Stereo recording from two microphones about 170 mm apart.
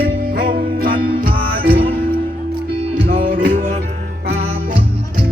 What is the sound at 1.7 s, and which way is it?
Music, 35° right (ahead or behind).